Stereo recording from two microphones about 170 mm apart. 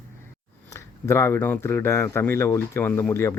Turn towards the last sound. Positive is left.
turn(degrees=15)  # may be behind; listen again after turning